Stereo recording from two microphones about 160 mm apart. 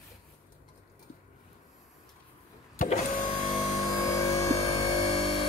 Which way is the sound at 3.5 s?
25° left (ahead or behind).